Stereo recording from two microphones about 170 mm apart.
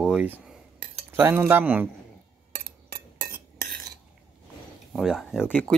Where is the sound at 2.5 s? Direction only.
70° right (ahead or behind).